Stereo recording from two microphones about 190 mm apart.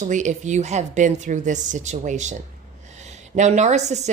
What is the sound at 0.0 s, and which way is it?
A woman's voice, 40° right (ahead or behind).